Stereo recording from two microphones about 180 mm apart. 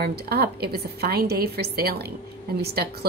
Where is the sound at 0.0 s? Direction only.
60° right (ahead or behind).